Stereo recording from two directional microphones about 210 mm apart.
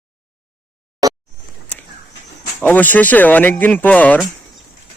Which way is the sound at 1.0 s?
15° right (ahead or behind).